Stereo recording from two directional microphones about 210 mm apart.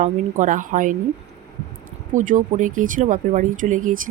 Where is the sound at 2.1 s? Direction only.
40° right (ahead or behind).